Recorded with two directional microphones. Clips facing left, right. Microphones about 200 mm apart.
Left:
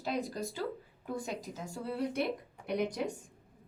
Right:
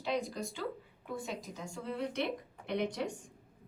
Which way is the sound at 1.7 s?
35° left (ahead or behind).